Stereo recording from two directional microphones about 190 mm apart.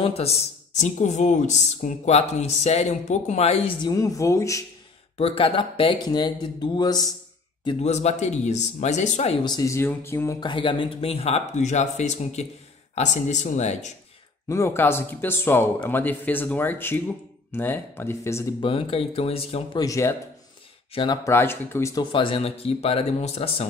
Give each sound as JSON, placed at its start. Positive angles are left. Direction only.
{"t": 0.0, "sound": "speech", "side_deg": 30}
{"t": 3.9, "sound": "speech", "side_deg": 15}
{"t": 5.1, "sound": "speech", "side_deg": 30}
{"t": 7.6, "sound": "speech", "side_deg": 35}
{"t": 10.4, "sound": "speech", "side_deg": 25}
{"t": 14.5, "sound": "speech", "side_deg": 15}
{"t": 18.6, "sound": "speech", "side_deg": 30}
{"t": 19.8, "sound": "speech", "side_deg": 15}
{"t": 22.1, "sound": "speech", "side_deg": 30}